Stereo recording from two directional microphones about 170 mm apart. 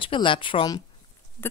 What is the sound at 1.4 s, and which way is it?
Speech, 15° left (ahead or behind).